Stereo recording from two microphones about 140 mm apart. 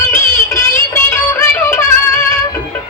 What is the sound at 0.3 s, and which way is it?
Music, 20° left (ahead or behind).